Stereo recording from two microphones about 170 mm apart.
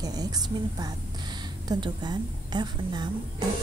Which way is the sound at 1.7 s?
25° right (ahead or behind).